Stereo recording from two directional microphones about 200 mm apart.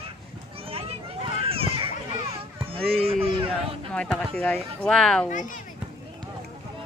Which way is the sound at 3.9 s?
5° left (ahead or behind).